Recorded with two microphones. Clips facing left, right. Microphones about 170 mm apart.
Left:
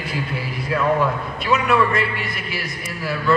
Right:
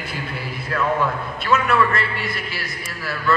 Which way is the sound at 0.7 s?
10° left (ahead or behind).